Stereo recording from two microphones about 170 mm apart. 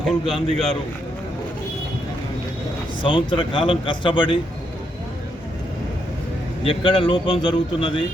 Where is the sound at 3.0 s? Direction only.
30° left (ahead or behind).